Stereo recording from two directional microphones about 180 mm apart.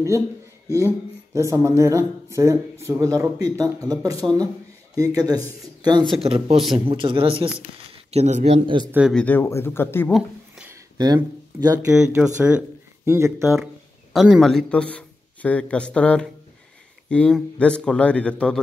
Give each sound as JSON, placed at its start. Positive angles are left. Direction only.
{"t": 0.7, "sound": "speech", "side_deg": -15}
{"t": 8.6, "sound": "speech", "side_deg": -25}
{"t": 9.1, "sound": "speech", "side_deg": 10}
{"t": 10.1, "sound": "a sound", "side_deg": -5}
{"t": 10.7, "sound": "a sound", "side_deg": -20}
{"t": 11.6, "sound": "speech", "side_deg": -20}
{"t": 14.1, "sound": "speech", "side_deg": 0}